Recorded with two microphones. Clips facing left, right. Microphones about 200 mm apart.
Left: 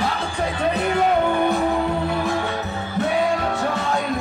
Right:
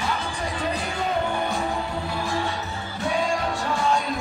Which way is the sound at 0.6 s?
65° left (ahead or behind).